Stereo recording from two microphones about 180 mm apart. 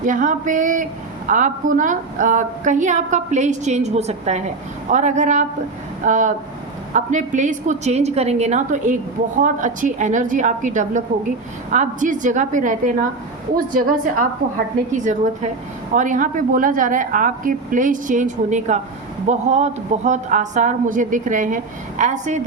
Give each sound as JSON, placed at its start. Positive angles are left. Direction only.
{"t": 0.0, "sound": "a woman's voice", "side_deg": -45}